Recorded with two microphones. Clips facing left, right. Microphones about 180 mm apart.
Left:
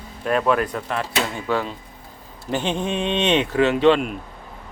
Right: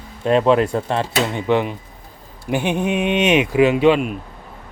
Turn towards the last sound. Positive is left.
turn(degrees=-10)  # may be behind; listen again after turning